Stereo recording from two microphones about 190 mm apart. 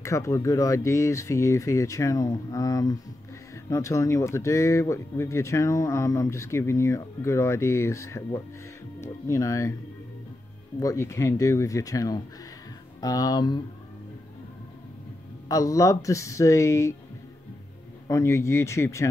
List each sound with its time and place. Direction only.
0.0 s speech: 15° left (ahead or behind)
10.8 s speech: 15° left (ahead or behind)
15.4 s speech: 20° left (ahead or behind)
18.0 s speech: 15° left (ahead or behind)